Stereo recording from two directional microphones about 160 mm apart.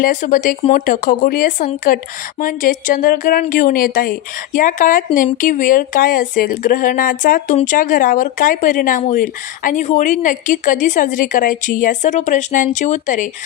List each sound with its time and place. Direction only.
0.0 s speech: 55° left (ahead or behind)